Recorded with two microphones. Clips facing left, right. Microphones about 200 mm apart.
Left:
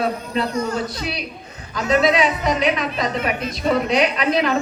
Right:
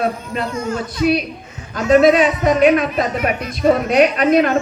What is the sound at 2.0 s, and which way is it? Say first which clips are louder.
Speech: right 6 dB; 50° right (ahead or behind).